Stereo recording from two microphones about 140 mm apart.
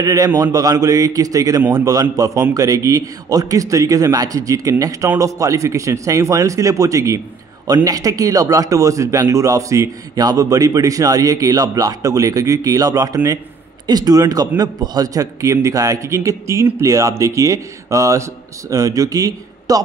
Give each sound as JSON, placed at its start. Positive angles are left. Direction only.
{"t": 0.0, "sound": "a man's voice", "side_deg": -25}